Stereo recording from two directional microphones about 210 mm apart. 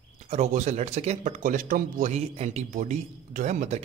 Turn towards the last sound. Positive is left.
turn(degrees=-35)  # may be behind; listen again after turning